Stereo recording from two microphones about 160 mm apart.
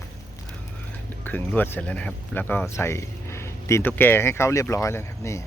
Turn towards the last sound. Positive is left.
turn(degrees=15)  # may be behind; listen again after turning